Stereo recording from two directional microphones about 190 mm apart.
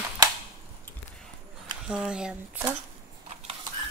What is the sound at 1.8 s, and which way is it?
Speech, 5° right (ahead or behind).